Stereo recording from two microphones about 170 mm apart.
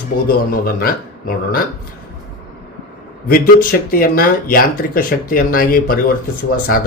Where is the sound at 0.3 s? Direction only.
60° left (ahead or behind).